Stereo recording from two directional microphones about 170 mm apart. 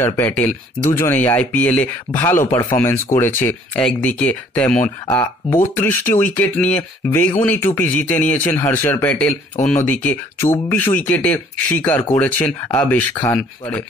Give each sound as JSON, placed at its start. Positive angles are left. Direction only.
{"t": 0.0, "sound": "speech", "side_deg": 15}